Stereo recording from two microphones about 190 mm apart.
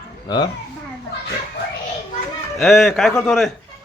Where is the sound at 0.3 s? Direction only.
20° left (ahead or behind).